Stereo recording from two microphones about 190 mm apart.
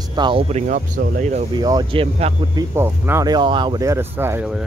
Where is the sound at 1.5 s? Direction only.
20° right (ahead or behind).